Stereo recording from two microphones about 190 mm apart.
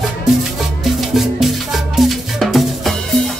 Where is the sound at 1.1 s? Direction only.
Centre (ahead or behind).